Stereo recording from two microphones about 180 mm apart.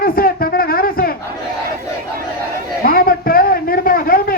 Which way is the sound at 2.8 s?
55° left (ahead or behind).